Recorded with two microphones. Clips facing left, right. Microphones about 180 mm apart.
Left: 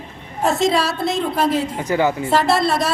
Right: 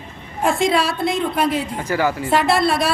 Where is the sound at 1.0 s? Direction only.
25° left (ahead or behind).